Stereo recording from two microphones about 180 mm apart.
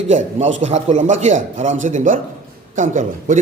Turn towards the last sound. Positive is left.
turn(degrees=-45)  # may be behind; listen again after turning